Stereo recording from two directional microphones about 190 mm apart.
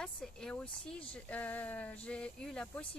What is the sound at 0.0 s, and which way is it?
Speech, 5° left (ahead or behind).